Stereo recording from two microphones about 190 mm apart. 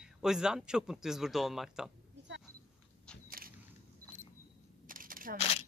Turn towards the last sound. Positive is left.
turn(degrees=-45)  # may be behind; listen again after turning